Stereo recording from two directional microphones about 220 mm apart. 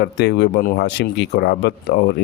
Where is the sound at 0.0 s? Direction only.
50° left (ahead or behind).